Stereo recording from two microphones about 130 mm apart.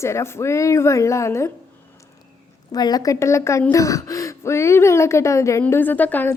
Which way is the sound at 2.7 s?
30° left (ahead or behind).